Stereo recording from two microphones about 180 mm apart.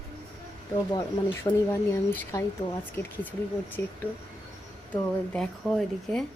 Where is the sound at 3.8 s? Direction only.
15° left (ahead or behind).